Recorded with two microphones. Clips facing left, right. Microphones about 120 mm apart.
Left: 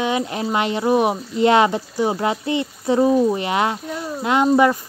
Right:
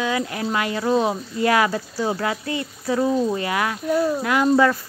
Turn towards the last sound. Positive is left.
turn(degrees=20)  # may be behind; listen again after turning